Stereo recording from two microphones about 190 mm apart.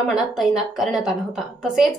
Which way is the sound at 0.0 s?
Centre (ahead or behind).